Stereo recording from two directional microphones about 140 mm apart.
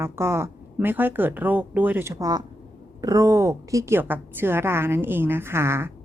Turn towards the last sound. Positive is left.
turn(degrees=-20)  # may be behind; listen again after turning